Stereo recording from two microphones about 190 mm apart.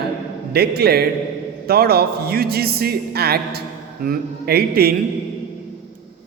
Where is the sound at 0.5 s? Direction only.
55° right (ahead or behind).